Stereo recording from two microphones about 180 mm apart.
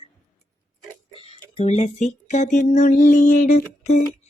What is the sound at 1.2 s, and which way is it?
Speech, 35° left (ahead or behind).